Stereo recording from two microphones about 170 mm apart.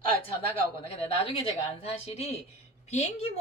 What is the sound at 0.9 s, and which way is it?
Speech, 35° left (ahead or behind).